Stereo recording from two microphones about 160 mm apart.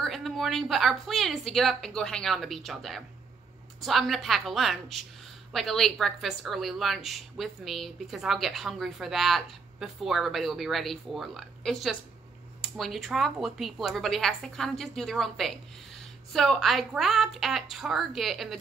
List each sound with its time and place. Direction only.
0.0 s a woman's voice: centre (ahead or behind)